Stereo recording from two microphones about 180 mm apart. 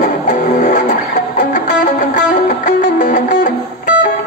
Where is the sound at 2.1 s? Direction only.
45° left (ahead or behind).